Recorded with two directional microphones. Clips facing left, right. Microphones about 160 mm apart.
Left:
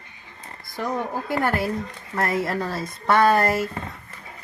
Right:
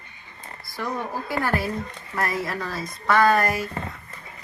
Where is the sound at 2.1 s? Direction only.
25° left (ahead or behind).